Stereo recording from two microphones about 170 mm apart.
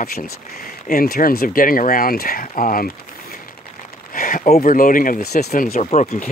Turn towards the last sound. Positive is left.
turn(degrees=40)  # may be behind; listen again after turning